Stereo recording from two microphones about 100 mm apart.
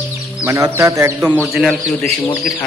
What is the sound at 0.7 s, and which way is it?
Speech, 30° right (ahead or behind).